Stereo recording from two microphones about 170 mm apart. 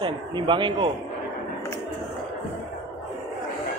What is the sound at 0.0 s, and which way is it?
Speech, 30° right (ahead or behind).